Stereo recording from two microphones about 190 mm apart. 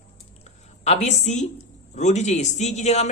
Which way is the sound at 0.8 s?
35° left (ahead or behind).